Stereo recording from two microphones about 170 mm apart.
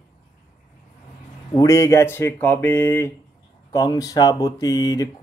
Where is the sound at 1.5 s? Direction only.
15° left (ahead or behind).